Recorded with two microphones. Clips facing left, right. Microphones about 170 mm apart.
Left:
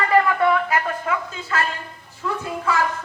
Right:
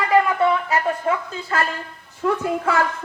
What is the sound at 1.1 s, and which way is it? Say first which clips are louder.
Speech: right 2 dB; 35° right (ahead or behind).